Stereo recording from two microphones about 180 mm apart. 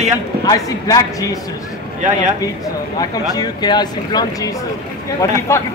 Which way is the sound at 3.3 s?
20° left (ahead or behind).